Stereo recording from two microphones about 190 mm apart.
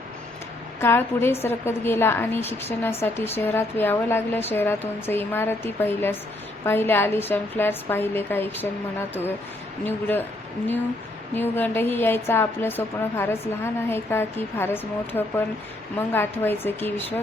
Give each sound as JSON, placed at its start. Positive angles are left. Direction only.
{"t": 0.8, "sound": "a woman's voice", "side_deg": 10}
{"t": 9.8, "sound": "a woman's voice", "side_deg": 10}
{"t": 11.3, "sound": "a woman's voice", "side_deg": 10}